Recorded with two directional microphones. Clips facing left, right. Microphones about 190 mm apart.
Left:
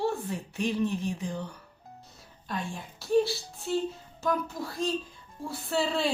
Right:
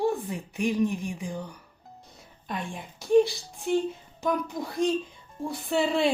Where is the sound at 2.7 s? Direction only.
15° right (ahead or behind).